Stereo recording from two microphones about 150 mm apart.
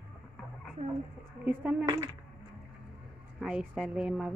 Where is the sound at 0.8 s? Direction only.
45° right (ahead or behind).